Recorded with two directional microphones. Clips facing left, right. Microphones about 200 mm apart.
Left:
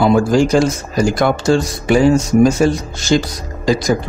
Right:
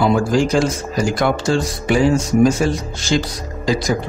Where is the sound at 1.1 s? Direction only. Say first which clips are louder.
Left 3 dB; 45° left (ahead or behind).